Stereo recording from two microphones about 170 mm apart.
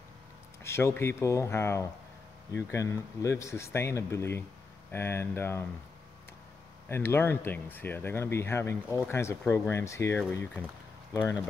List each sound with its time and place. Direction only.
0.7 s speech: 15° left (ahead or behind)
6.9 s speech: 15° left (ahead or behind)